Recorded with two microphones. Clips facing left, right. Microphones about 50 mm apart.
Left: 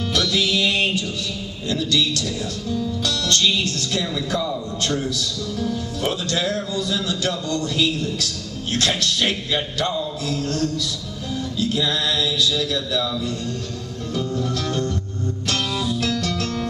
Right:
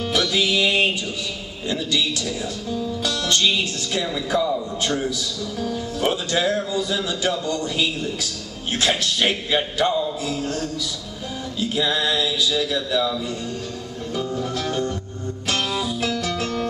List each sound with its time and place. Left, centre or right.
0.0 s music: centre
1.7 s speech: centre
8.7 s music: centre